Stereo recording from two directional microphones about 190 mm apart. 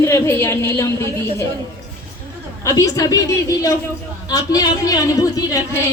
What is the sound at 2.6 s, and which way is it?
Speech, 15° left (ahead or behind).